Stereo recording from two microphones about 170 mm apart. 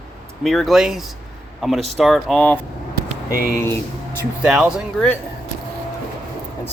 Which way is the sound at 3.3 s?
65° left (ahead or behind).